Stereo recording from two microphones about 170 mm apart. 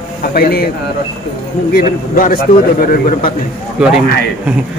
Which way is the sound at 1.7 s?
60° left (ahead or behind).